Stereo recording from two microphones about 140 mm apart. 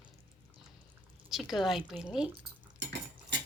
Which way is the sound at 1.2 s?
Centre (ahead or behind).